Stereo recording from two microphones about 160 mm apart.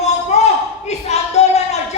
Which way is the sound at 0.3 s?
45° left (ahead or behind).